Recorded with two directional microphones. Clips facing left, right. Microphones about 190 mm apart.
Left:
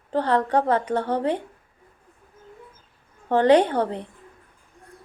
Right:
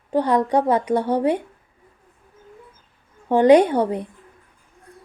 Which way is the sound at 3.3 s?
10° right (ahead or behind).